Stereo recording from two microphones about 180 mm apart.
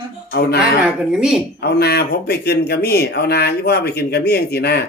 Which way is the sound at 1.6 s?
65° left (ahead or behind).